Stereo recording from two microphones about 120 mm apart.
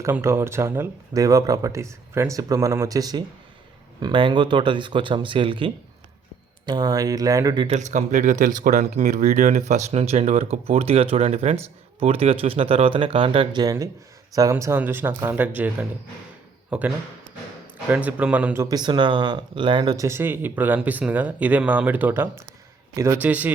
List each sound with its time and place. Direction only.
0.0 s speech: 20° right (ahead or behind); by 5.7 s 45° right (ahead or behind)
6.7 s speech: 35° right (ahead or behind)
7.7 s speech: 80° right; by 13.5 s 50° right (ahead or behind)
13.5 s speech: 35° right (ahead or behind)
14.5 s speech: 20° right (ahead or behind)
18.5 s speech: 25° right (ahead or behind)
18.8 s speech: 40° right (ahead or behind)
20.1 s speech: 20° right (ahead or behind)